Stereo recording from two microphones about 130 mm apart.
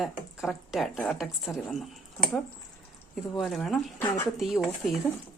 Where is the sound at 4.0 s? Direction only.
20° left (ahead or behind).